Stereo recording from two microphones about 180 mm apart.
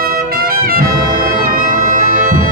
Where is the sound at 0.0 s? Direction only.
55° right (ahead or behind).